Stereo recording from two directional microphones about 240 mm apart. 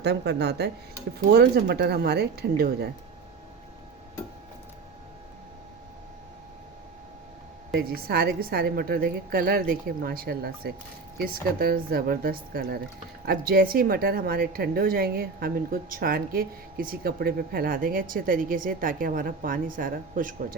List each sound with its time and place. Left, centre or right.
0.0 s a woman's voice: right
7.7 s a woman's voice: right